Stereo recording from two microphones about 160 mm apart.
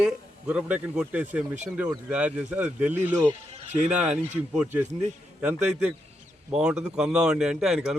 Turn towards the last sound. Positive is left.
turn(degrees=-5)  # may be behind; listen again after turning